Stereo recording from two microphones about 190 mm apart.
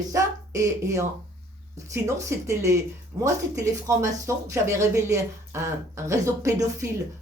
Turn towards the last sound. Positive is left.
turn(degrees=-15)  # may be behind; listen again after turning